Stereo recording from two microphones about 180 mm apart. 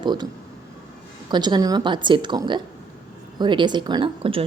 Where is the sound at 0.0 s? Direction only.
25° right (ahead or behind).